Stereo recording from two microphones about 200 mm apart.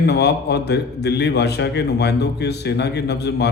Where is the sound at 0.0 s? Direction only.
55° left (ahead or behind).